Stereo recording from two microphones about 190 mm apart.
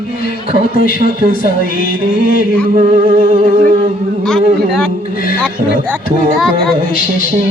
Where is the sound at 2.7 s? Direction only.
35° right (ahead or behind).